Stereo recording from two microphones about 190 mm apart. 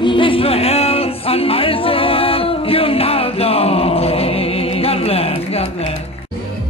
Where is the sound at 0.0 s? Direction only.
25° left (ahead or behind).